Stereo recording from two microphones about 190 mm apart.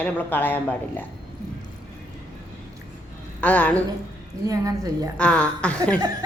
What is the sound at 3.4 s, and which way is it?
Speech, 10° left (ahead or behind).